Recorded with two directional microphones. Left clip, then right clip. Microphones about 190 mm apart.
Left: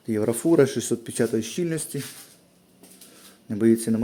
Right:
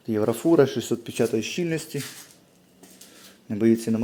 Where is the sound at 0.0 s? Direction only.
15° left (ahead or behind).